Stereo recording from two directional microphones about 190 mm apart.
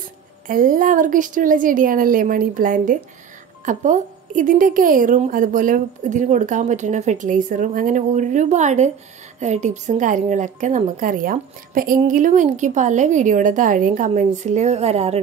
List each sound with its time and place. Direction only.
0.5 s a woman's voice: 45° right (ahead or behind)